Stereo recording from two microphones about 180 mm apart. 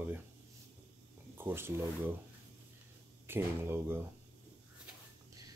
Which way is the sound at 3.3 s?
10° right (ahead or behind).